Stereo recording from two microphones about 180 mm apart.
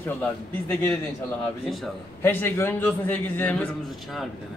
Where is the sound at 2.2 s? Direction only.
15° left (ahead or behind).